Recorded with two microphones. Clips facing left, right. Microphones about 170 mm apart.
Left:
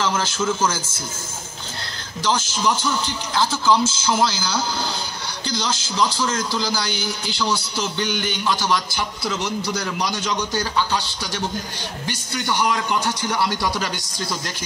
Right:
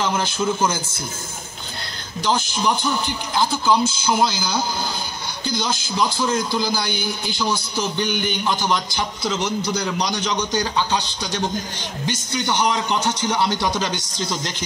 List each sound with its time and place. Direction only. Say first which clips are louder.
0.0 s speech: right 1 dB; 15° right (ahead or behind)
2.2 s a man's voice: right 1 dB; 15° right (ahead or behind)